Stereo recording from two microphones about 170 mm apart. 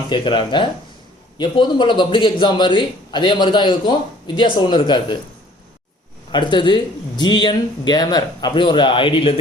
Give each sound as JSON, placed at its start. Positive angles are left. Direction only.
{"t": 0.1, "sound": "speech", "side_deg": 30}
{"t": 6.3, "sound": "speech", "side_deg": 30}